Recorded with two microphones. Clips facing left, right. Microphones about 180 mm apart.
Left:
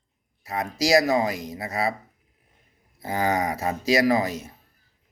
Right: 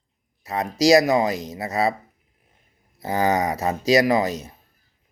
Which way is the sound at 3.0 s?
25° right (ahead or behind).